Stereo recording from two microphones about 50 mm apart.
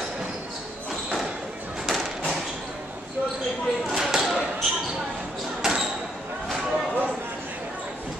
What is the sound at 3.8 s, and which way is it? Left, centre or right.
Basketball bounce, centre.